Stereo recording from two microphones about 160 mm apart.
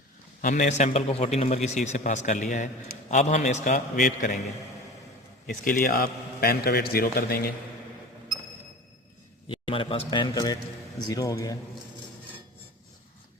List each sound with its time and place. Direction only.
0.4 s a man's voice: 50° left (ahead or behind)
5.5 s a man's voice: 60° left (ahead or behind)
9.5 s a man's voice: 30° left (ahead or behind)